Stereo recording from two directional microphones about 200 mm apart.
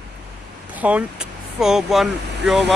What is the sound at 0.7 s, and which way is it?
Speech, 5° right (ahead or behind).